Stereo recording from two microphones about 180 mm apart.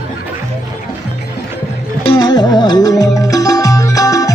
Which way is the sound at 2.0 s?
25° left (ahead or behind).